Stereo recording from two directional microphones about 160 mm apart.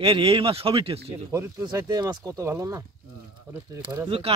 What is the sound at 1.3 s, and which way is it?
Speech, 20° right (ahead or behind).